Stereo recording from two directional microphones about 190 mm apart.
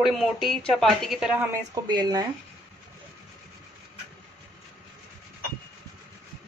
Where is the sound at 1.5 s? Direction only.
20° right (ahead or behind).